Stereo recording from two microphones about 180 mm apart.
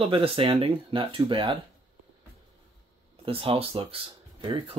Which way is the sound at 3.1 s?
30° right (ahead or behind).